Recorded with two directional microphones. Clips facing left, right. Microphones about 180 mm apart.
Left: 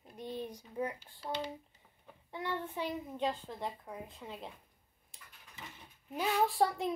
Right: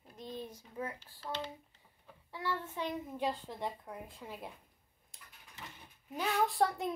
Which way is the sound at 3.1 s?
15° right (ahead or behind).